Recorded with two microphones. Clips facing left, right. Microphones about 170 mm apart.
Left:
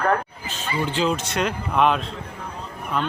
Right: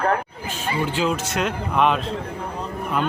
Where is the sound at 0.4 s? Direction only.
10° right (ahead or behind).